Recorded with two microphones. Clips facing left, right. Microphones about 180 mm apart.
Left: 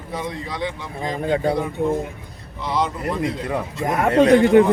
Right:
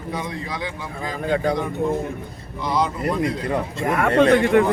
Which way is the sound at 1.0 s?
25° left (ahead or behind).